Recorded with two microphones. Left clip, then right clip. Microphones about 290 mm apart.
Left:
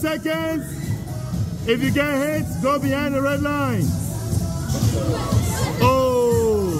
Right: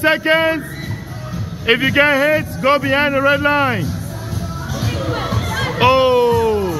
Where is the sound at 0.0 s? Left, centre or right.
Centre.